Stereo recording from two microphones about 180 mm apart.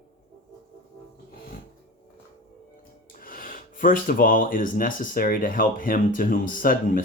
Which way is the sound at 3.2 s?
50° left (ahead or behind).